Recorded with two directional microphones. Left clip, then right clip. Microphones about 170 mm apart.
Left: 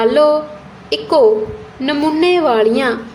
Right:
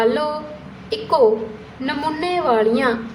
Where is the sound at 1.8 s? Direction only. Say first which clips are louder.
Left 8 dB; 25° left (ahead or behind).